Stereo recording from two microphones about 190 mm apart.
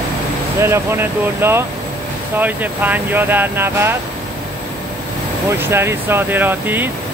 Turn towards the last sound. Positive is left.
turn(degrees=-10)  # may be behind; listen again after turning